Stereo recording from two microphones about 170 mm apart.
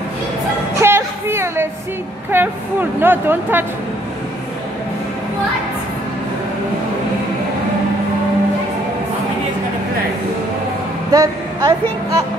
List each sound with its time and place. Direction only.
0.7 s a sound: 15° right (ahead or behind)
2.3 s speech: 10° right (ahead or behind)
11.1 s vehicle: 20° right (ahead or behind)